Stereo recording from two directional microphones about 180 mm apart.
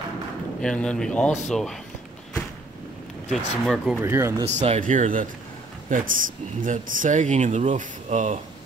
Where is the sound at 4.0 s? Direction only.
15° right (ahead or behind).